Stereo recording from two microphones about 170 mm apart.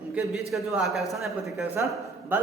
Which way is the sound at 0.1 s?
5° right (ahead or behind).